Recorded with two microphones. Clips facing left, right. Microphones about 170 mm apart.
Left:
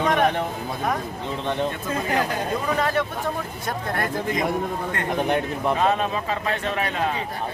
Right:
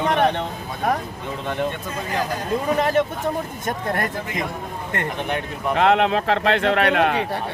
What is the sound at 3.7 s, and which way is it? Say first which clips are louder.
Speech: right 2 dB; 50° right (ahead or behind).